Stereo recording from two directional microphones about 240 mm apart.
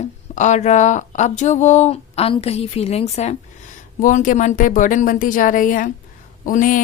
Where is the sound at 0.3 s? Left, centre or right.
Left.